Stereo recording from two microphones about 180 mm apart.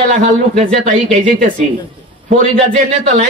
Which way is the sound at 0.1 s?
45° right (ahead or behind).